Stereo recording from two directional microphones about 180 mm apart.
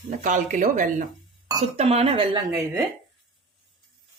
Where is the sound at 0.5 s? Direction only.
45° right (ahead or behind).